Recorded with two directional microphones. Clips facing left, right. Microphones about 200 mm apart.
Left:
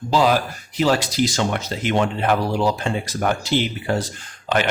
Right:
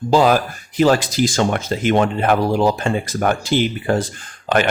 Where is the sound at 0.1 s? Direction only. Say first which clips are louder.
Right 3 dB; 50° right (ahead or behind).